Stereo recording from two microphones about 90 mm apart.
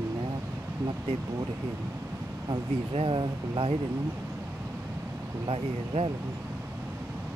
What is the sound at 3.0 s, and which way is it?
Speech, 65° right (ahead or behind).